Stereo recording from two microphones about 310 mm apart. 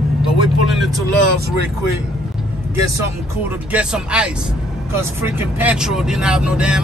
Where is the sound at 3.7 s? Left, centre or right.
Centre.